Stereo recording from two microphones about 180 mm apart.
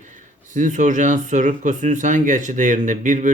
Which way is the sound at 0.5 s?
45° right (ahead or behind).